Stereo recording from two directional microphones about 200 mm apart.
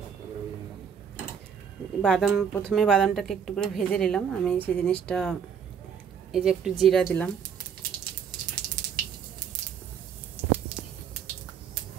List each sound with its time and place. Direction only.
2.0 s speech: centre (ahead or behind)